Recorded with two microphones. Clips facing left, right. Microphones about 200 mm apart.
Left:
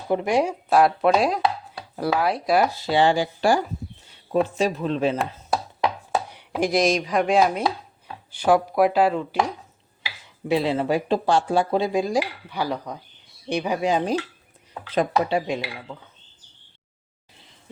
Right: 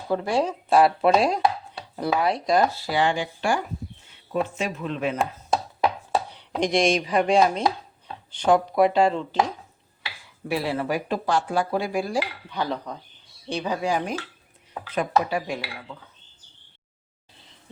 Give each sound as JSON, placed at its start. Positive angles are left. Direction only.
{"t": 0.1, "sound": "speech", "side_deg": 15}
{"t": 0.7, "sound": "speech", "side_deg": 0}
{"t": 2.7, "sound": "speech", "side_deg": 25}
{"t": 6.3, "sound": "speech", "side_deg": 5}
{"t": 10.5, "sound": "speech", "side_deg": 20}